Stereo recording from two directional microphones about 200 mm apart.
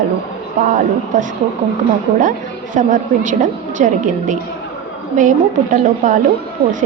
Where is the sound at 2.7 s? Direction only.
40° right (ahead or behind).